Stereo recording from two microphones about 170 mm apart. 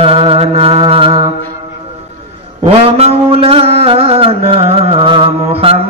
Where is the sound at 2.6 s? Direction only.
35° right (ahead or behind).